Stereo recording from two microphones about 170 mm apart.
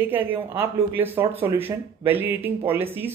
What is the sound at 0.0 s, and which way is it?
Speech, 10° right (ahead or behind).